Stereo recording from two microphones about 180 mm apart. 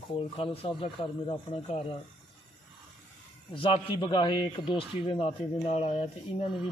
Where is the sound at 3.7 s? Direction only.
25° left (ahead or behind).